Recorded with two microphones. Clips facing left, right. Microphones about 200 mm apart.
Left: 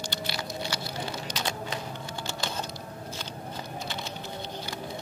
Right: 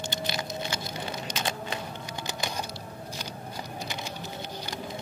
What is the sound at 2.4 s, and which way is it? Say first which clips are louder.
Typing: right 1 dB; 15° right (ahead or behind).